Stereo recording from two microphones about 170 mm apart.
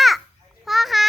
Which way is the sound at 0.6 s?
Centre (ahead or behind).